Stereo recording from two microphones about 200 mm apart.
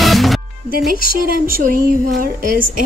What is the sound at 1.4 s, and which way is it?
A woman's voice, 45° right (ahead or behind).